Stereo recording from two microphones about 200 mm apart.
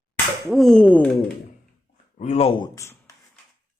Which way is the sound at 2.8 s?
15° left (ahead or behind).